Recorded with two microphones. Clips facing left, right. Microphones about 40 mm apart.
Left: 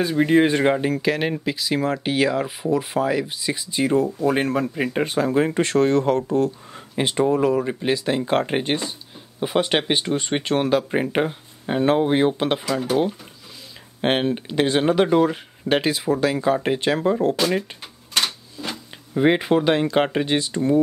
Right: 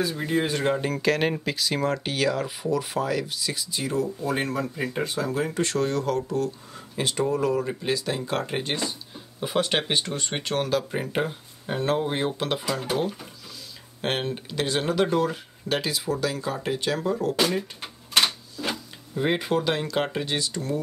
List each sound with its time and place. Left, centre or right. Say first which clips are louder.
0.0 s speech: left 8 dB; left
0.7 s speech: left 2 dB; centre
2.1 s speech: left 4 dB; centre
8.8 s speech: even; centre
14.0 s speech: left 7 dB; left
17.8 s typewriter: right 1 dB; centre
19.1 s speech: left 6 dB; left